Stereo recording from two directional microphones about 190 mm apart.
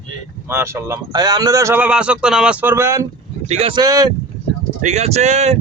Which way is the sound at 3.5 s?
30° right (ahead or behind).